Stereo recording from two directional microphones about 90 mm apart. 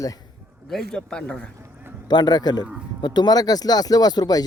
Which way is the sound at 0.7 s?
10° left (ahead or behind).